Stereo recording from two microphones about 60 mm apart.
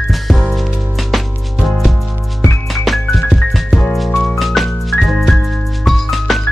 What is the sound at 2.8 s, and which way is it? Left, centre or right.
Music, centre.